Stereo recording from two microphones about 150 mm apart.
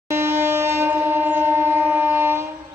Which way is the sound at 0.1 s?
15° right (ahead or behind).